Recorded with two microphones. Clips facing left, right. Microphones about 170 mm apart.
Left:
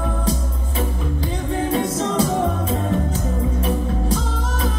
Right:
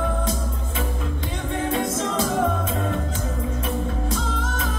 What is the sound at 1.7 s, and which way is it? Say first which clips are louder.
Music: left 3 dB; 30° left (ahead or behind).